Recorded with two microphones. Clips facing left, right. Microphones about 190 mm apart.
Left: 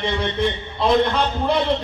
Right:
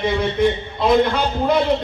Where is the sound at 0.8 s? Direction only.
5° right (ahead or behind).